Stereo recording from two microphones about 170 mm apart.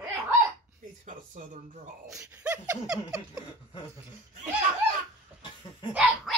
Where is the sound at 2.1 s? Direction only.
5° right (ahead or behind).